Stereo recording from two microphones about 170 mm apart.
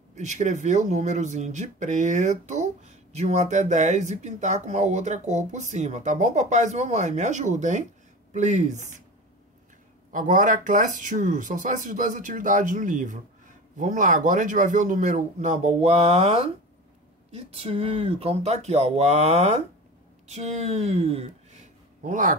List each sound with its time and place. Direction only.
0.1 s speech: 45° right (ahead or behind)
10.1 s speech: 50° right (ahead or behind)